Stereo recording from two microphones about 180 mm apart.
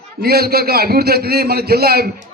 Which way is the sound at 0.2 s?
60° right (ahead or behind).